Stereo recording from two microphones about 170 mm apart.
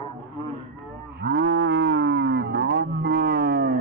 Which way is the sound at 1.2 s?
85° right.